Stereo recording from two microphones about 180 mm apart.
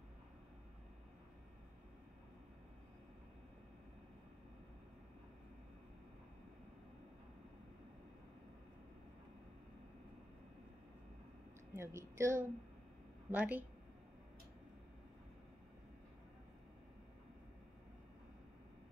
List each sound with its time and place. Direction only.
11.7 s a woman's voice: 15° right (ahead or behind)